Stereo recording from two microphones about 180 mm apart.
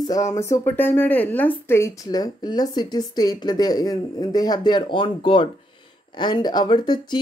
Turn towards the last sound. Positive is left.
turn(degrees=25)  # may be behind; listen again after turning